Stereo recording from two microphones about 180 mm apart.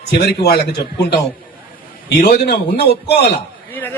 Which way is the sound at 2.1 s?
65° left (ahead or behind).